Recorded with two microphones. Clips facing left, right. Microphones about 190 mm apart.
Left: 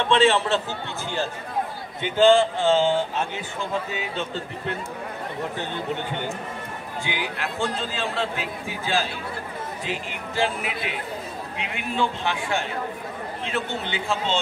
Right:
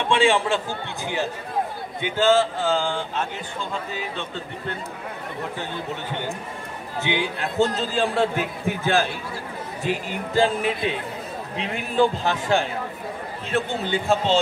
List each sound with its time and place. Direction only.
0.1 s a man's voice: 10° right (ahead or behind)
2.1 s a man's voice: 5° right (ahead or behind)
7.0 s a man's voice: 25° right (ahead or behind); by 9.1 s 55° right (ahead or behind)
9.8 s a man's voice: 35° right (ahead or behind)